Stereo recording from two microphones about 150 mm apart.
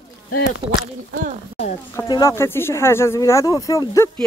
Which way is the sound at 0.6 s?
40° right (ahead or behind).